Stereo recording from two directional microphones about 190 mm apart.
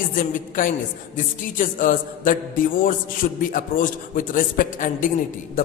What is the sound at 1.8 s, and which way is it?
Music, 45° left (ahead or behind).